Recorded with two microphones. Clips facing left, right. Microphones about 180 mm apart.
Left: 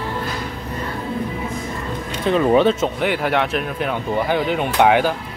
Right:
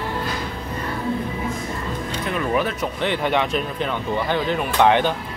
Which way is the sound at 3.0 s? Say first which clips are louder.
Right 1 dB; 5° left (ahead or behind).